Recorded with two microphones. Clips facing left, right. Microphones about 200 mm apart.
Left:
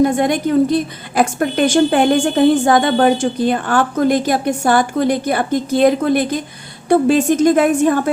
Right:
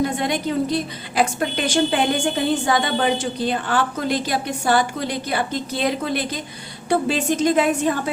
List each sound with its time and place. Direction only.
0.0 s a woman's voice: 50° left (ahead or behind)